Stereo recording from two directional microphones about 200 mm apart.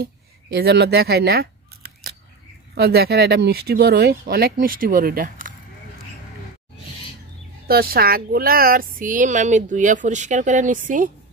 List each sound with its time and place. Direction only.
0.6 s speech: 55° right (ahead or behind)
7.6 s speech: 50° right (ahead or behind)